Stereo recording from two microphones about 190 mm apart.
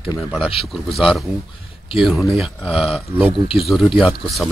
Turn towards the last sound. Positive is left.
turn(degrees=0)  # may be behind; listen again after turning